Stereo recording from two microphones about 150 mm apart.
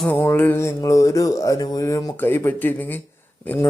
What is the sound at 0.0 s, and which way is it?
Mantra, 10° left (ahead or behind).